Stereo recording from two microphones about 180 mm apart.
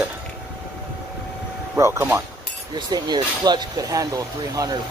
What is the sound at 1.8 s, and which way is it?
Speech, 15° right (ahead or behind).